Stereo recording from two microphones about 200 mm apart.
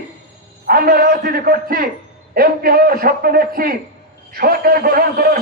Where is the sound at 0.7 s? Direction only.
45° right (ahead or behind).